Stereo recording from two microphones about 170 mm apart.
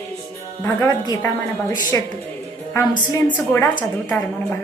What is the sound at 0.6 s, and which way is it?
A woman's voice, 20° left (ahead or behind).